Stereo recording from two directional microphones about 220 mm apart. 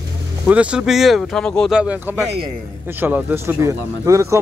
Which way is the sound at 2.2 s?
25° right (ahead or behind).